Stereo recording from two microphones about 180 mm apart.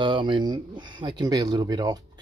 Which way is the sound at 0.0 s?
25° right (ahead or behind).